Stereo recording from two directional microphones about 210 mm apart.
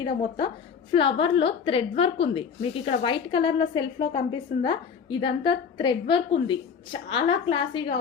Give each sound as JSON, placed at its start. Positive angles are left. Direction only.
{"t": 0.0, "sound": "a woman's voice", "side_deg": 20}